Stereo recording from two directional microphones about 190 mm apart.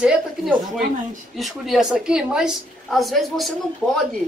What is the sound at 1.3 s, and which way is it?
A woman's voice, centre (ahead or behind).